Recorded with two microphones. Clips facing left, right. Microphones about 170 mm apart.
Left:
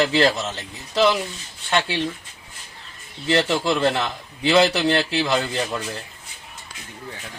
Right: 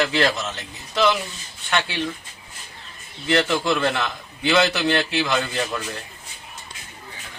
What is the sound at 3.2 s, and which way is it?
A man's voice, 30° left (ahead or behind).